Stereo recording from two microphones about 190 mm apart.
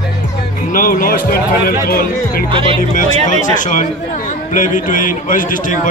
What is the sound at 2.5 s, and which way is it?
Speech, 25° right (ahead or behind).